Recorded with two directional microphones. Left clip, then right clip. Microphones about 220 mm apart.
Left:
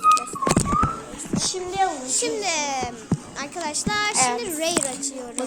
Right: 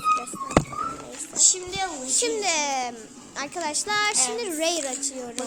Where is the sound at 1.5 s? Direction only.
55° right (ahead or behind).